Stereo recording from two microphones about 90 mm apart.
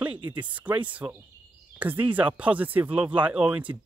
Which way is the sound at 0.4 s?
15° right (ahead or behind).